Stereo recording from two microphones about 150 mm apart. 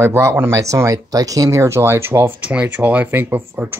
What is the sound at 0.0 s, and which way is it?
Speech, 20° right (ahead or behind).